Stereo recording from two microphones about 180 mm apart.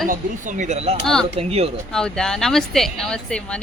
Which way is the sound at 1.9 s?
5° left (ahead or behind).